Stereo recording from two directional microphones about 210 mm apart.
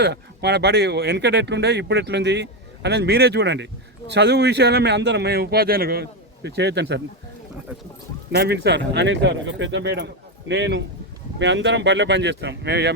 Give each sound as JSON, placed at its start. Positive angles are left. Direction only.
{"t": 0.0, "sound": "speech", "side_deg": -50}
{"t": 8.4, "sound": "speech", "side_deg": -50}